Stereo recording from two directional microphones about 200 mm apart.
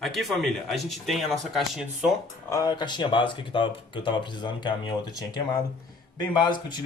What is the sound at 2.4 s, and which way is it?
Speech, 20° left (ahead or behind).